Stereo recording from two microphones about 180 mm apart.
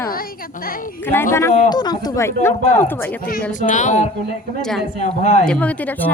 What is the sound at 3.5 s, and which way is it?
Speech, 45° left (ahead or behind).